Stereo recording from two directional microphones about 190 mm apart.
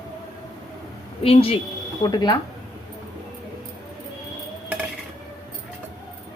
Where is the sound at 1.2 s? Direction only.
30° left (ahead or behind).